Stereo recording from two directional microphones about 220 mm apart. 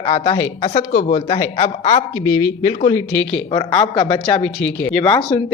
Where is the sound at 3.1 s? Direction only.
5° left (ahead or behind).